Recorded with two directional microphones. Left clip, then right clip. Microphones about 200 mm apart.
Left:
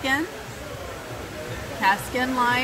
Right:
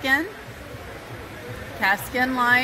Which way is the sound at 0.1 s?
45° right (ahead or behind).